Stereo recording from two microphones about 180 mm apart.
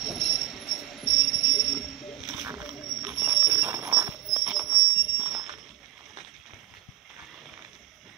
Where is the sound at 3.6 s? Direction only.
20° right (ahead or behind).